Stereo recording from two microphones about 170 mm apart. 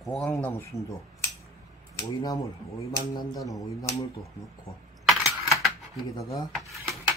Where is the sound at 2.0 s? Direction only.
20° left (ahead or behind).